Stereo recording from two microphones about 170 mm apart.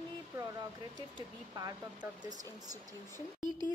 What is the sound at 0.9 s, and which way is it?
Speech, 20° right (ahead or behind).